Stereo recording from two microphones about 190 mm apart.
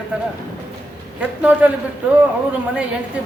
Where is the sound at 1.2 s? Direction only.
10° right (ahead or behind).